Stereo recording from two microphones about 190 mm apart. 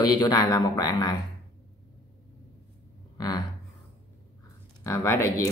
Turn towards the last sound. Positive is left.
turn(degrees=15)  # may be behind; listen again after turning